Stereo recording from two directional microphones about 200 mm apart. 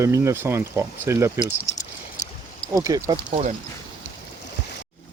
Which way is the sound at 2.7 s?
15° right (ahead or behind).